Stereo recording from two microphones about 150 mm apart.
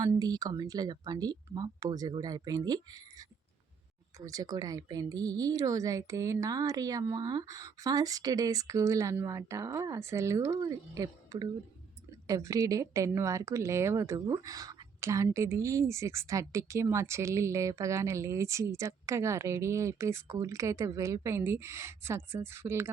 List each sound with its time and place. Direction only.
0.0 s speech: 25° right (ahead or behind)